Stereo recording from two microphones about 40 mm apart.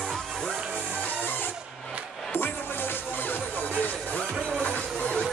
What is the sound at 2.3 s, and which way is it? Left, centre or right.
Music, left.